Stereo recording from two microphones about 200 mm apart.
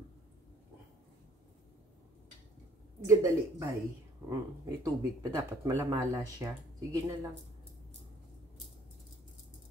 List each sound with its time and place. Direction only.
3.1 s speech: 15° right (ahead or behind)